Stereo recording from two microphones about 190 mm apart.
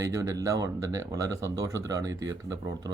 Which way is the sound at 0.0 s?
15° right (ahead or behind).